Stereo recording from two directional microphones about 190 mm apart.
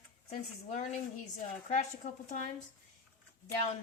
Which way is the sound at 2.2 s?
40° left (ahead or behind).